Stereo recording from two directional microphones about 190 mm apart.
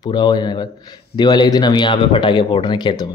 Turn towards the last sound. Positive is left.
turn(degrees=25)  # may be behind; listen again after turning